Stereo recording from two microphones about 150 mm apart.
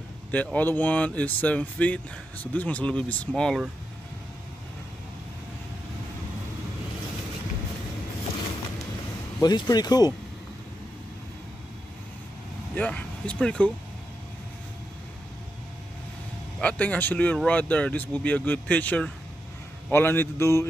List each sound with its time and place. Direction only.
0.3 s speech: 10° left (ahead or behind)
9.4 s speech: 25° left (ahead or behind)
12.7 s speech: 10° left (ahead or behind)
16.5 s speech: 10° left (ahead or behind)